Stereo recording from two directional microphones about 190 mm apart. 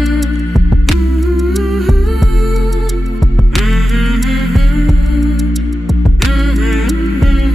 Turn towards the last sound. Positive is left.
turn(degrees=0)  # may be behind; listen again after turning